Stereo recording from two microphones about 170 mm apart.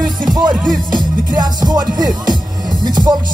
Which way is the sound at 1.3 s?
25° right (ahead or behind).